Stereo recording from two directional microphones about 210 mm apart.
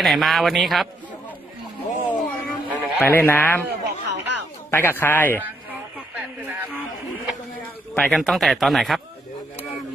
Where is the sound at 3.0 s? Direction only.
10° left (ahead or behind).